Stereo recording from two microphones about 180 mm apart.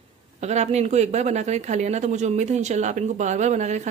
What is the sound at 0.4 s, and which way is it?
Speech, 40° right (ahead or behind).